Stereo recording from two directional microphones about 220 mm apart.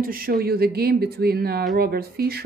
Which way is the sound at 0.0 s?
40° right (ahead or behind).